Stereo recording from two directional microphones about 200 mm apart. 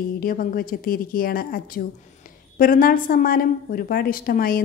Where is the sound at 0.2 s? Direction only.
45° left (ahead or behind).